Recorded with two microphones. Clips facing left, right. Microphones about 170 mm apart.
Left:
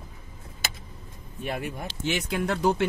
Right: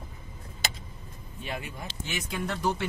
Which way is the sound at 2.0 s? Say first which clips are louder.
Left 6 dB; 90° left.